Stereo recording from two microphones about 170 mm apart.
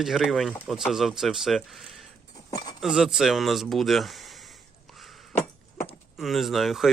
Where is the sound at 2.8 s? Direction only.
5° right (ahead or behind).